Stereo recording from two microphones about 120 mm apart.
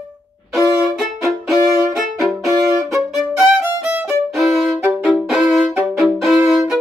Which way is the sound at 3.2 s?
5° right (ahead or behind).